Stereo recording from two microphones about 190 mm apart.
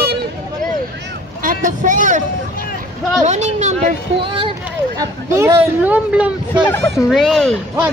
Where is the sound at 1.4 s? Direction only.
45° right (ahead or behind).